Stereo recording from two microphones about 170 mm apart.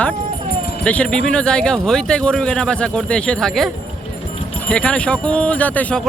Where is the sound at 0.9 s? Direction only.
5° left (ahead or behind).